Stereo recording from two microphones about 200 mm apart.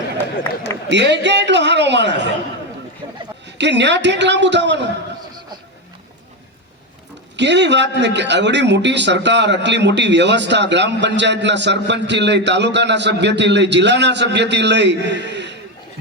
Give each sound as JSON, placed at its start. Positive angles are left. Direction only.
{"t": 0.9, "sound": "a man's voice", "side_deg": -60}
{"t": 3.0, "sound": "a sound", "side_deg": -25}
{"t": 3.4, "sound": "a man's voice", "side_deg": -60}
{"t": 7.3, "sound": "a man's voice", "side_deg": -60}